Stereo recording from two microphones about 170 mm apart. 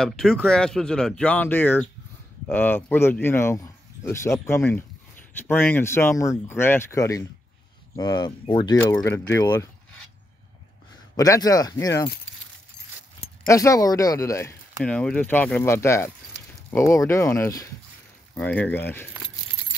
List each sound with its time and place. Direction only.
0.0 s speech: centre (ahead or behind); by 8.7 s 25° left (ahead or behind)
8.7 s speech: 15° left (ahead or behind)
11.1 s speech: 20° left (ahead or behind)
13.5 s speech: 20° left (ahead or behind)
14.8 s speech: 5° left (ahead or behind)